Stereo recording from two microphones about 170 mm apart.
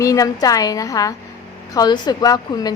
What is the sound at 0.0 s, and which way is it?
A woman's voice, 20° left (ahead or behind).